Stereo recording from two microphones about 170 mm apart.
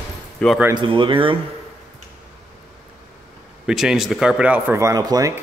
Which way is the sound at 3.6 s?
5° right (ahead or behind).